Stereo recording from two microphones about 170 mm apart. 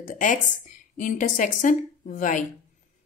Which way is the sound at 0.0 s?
50° left (ahead or behind).